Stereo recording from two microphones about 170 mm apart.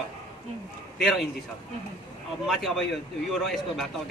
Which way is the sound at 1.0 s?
Centre (ahead or behind).